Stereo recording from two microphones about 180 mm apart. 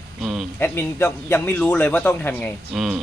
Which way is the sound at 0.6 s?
15° left (ahead or behind).